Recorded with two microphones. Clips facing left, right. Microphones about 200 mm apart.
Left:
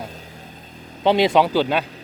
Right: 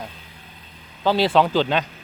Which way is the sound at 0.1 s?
40° left (ahead or behind).